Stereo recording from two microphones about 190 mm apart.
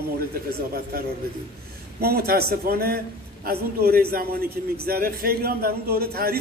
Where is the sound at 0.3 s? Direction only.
50° right (ahead or behind).